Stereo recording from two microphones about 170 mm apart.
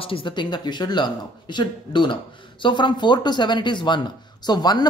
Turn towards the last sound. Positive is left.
turn(degrees=25)  # may be behind; listen again after turning